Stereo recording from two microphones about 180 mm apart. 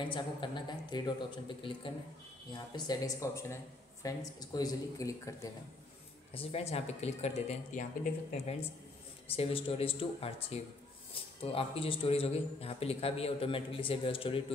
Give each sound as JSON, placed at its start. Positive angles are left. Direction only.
{"t": 0.0, "sound": "speech", "side_deg": 25}
{"t": 6.3, "sound": "a man's voice", "side_deg": 35}
{"t": 9.3, "sound": "a man's voice", "side_deg": 30}